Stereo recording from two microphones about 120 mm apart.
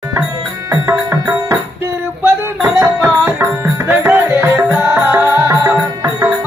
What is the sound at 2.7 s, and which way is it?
Music, 20° right (ahead or behind).